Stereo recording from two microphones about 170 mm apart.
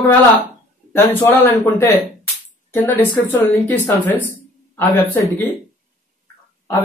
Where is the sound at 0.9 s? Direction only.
15° left (ahead or behind).